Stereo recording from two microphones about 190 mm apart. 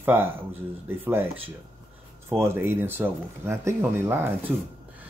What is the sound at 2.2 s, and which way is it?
Speech, 15° right (ahead or behind).